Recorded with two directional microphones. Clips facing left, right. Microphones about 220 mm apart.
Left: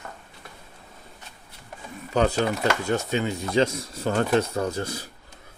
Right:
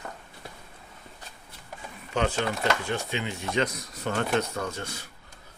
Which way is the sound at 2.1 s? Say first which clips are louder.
Left 5 dB; 35° left (ahead or behind).